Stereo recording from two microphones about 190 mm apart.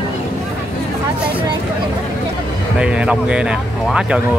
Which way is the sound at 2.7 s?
5° right (ahead or behind).